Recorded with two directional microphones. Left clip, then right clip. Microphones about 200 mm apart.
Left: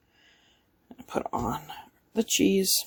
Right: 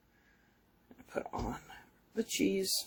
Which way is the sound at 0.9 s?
45° left (ahead or behind).